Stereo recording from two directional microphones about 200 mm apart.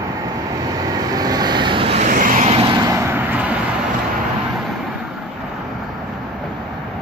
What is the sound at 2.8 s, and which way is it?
Vehicle, 15° right (ahead or behind).